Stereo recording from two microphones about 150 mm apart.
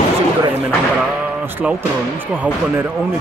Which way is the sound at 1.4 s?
15° right (ahead or behind).